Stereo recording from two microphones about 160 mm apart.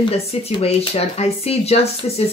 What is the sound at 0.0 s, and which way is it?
Speech, 35° left (ahead or behind).